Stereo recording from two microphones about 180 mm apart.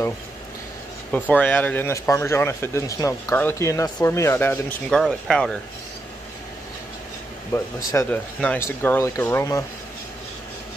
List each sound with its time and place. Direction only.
1.3 s speech: 10° left (ahead or behind)
7.5 s speech: 15° left (ahead or behind)